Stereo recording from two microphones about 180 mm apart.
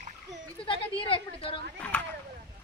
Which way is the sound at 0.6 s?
30° left (ahead or behind).